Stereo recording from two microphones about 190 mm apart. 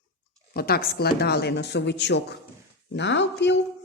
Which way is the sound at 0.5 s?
50° left (ahead or behind).